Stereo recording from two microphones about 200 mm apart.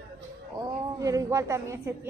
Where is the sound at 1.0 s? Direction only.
15° right (ahead or behind).